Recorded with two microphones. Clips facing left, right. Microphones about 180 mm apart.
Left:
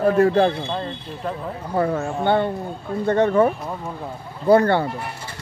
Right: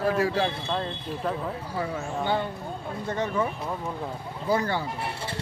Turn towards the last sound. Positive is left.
turn(degrees=60)  # may be behind; listen again after turning